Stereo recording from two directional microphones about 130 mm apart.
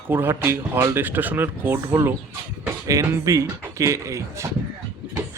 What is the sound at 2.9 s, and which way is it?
Speech, 25° right (ahead or behind).